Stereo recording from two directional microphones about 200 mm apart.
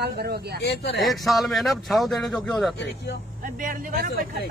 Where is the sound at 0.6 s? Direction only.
55° left (ahead or behind).